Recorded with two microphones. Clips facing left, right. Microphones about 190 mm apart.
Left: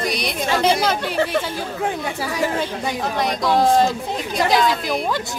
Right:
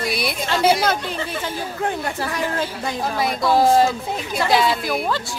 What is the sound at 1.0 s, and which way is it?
Speech, 60° left (ahead or behind).